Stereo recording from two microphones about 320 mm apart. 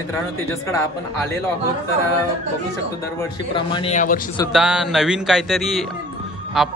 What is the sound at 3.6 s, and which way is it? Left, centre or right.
Speech, centre.